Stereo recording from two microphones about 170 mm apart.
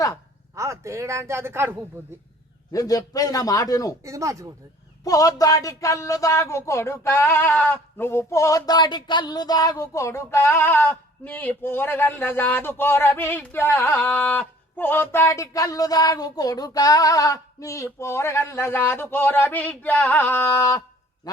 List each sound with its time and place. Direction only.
0.5 s speech: 15° right (ahead or behind)
2.7 s a man's voice: 20° left (ahead or behind)
4.0 s speech: 20° right (ahead or behind)
5.0 s speech: 20° left (ahead or behind)